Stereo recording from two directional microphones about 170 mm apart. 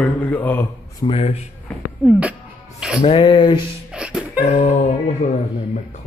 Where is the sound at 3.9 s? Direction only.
5° right (ahead or behind).